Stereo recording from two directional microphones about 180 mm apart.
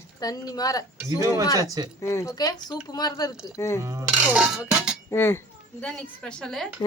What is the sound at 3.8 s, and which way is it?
Dishes, 20° right (ahead or behind).